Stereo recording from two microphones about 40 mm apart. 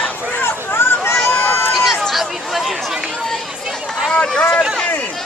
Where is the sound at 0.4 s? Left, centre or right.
Left.